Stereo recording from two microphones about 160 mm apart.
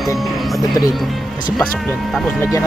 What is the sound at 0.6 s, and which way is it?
Speech, 25° left (ahead or behind).